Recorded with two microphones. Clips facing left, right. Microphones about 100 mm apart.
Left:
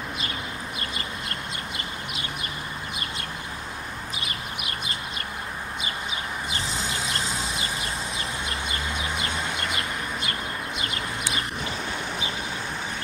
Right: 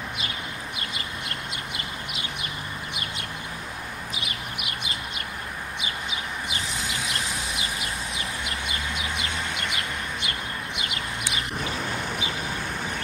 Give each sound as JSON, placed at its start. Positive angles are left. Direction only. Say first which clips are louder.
{"t": 4.2, "sound": "bird", "louder": "left 1 dB", "side_deg": 35}
{"t": 6.5, "sound": "vehicle", "louder": "left 2 dB", "side_deg": 30}
{"t": 8.9, "sound": "a sound", "louder": "left 1 dB", "side_deg": 35}